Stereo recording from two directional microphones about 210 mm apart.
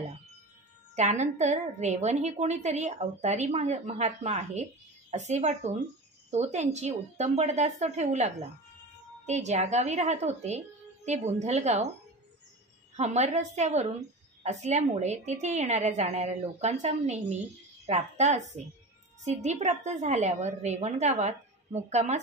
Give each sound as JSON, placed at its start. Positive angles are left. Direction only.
{"t": 0.9, "sound": "a woman's voice", "side_deg": -35}
{"t": 12.9, "sound": "a woman's voice", "side_deg": -30}